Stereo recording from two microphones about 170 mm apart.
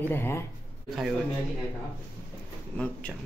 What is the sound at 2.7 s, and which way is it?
Speech, 5° left (ahead or behind).